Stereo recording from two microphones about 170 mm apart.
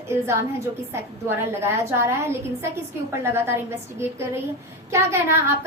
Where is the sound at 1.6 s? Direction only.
15° right (ahead or behind).